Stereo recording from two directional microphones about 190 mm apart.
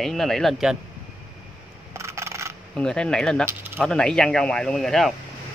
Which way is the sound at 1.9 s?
15° right (ahead or behind).